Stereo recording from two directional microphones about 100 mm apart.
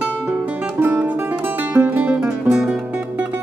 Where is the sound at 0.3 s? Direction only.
15° right (ahead or behind).